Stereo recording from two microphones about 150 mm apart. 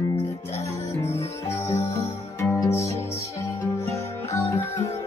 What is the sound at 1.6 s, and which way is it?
Music, 15° left (ahead or behind).